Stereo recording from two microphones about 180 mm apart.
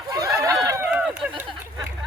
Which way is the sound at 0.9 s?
5° right (ahead or behind).